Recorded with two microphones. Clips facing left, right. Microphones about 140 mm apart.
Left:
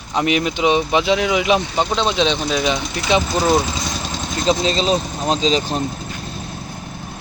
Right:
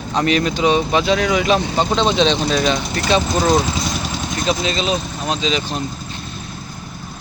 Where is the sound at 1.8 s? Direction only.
5° left (ahead or behind).